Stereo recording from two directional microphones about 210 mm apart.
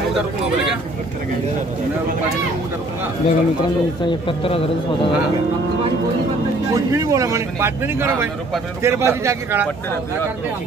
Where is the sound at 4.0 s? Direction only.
25° left (ahead or behind).